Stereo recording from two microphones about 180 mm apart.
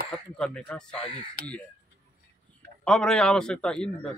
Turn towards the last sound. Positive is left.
turn(degrees=5)  # may be behind; listen again after turning